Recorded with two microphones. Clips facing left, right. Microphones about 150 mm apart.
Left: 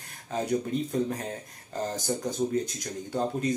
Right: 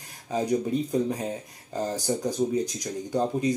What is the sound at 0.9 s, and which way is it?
Speech, 15° right (ahead or behind).